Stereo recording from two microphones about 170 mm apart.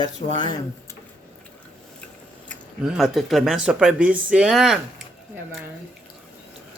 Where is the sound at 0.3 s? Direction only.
25° left (ahead or behind).